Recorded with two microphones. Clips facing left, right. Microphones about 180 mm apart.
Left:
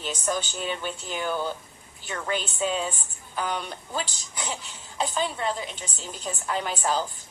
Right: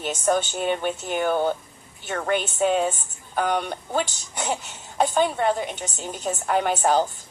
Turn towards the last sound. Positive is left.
turn(degrees=-55)  # may be behind; listen again after turning